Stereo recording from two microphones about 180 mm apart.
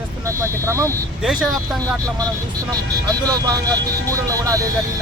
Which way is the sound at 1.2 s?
Centre (ahead or behind).